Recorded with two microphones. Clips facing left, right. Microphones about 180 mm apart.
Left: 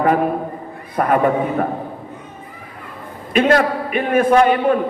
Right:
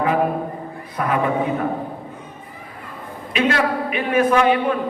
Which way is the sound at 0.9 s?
50° left (ahead or behind).